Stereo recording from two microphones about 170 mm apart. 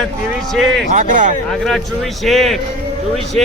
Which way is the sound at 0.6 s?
90° right.